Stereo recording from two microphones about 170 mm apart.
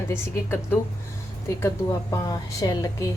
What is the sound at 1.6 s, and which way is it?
A woman's voice, 20° left (ahead or behind).